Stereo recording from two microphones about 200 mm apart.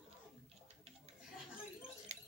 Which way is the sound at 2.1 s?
30° right (ahead or behind).